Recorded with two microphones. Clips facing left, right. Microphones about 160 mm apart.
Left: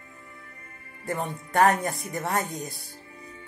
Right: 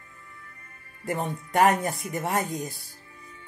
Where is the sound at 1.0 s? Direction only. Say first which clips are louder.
Right 1 dB; 15° right (ahead or behind).